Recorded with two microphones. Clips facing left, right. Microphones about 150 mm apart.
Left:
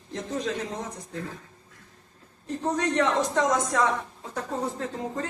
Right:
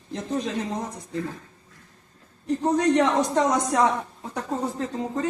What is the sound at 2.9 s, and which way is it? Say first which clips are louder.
Speech: right 3 dB; 15° right (ahead or behind).